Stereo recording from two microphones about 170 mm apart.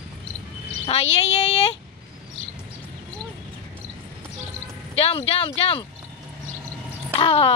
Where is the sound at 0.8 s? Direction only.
35° left (ahead or behind).